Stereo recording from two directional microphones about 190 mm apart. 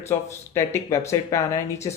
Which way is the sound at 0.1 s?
15° left (ahead or behind).